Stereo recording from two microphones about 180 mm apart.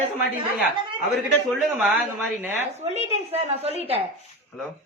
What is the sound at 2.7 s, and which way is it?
A woman's voice, 35° right (ahead or behind).